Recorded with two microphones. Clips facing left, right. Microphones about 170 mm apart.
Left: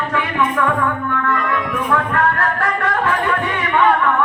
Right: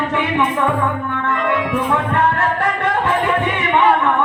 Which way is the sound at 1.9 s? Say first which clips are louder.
Left 2 dB; 25° right (ahead or behind).